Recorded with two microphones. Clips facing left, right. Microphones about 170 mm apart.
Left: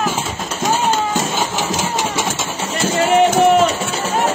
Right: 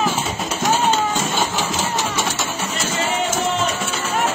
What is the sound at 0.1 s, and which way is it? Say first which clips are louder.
Music: even; centre (ahead or behind).